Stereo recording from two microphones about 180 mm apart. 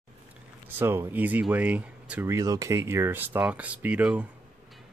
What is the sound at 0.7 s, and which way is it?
Speech, 15° right (ahead or behind).